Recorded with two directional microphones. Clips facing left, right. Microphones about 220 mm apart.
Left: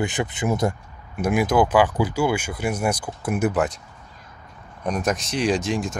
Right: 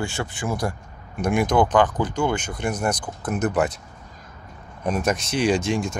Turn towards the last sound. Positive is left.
turn(degrees=0)  # may be behind; listen again after turning